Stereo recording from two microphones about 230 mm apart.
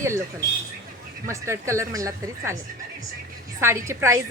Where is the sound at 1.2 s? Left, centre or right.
Centre.